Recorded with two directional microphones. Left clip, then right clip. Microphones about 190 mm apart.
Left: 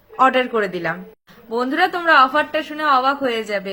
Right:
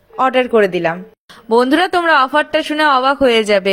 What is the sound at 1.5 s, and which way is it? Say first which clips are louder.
A woman's voice: right 7 dB; 55° right (ahead or behind).